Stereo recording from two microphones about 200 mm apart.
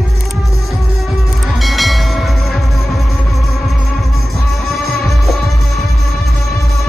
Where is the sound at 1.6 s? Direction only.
Centre (ahead or behind).